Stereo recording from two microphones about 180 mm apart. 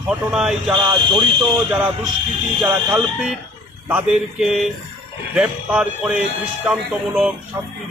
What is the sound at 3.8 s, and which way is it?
A man's voice, 5° right (ahead or behind).